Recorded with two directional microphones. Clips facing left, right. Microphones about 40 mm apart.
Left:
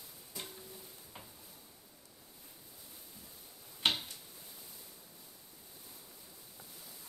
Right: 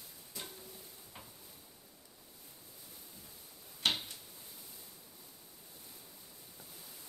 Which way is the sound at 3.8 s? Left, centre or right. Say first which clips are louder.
Left 1 dB; left.